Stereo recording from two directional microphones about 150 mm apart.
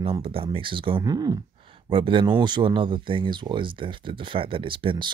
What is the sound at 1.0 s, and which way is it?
Speech, 25° right (ahead or behind).